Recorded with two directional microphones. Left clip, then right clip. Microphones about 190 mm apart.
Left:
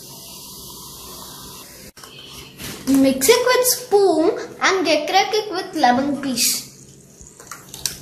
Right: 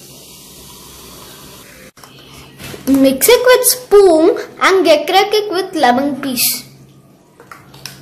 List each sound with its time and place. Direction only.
3.0 s speech: 60° right (ahead or behind)